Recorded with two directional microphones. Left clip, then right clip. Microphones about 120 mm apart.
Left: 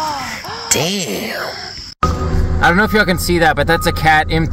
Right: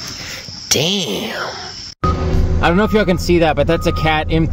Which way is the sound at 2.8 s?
5° right (ahead or behind).